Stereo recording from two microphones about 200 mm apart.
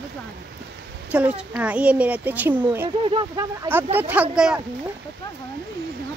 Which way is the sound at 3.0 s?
25° right (ahead or behind).